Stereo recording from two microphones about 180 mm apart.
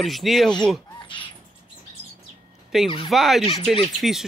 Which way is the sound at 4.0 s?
Centre (ahead or behind).